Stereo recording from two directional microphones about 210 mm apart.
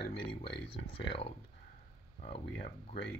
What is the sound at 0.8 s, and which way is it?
Speech, 25° left (ahead or behind).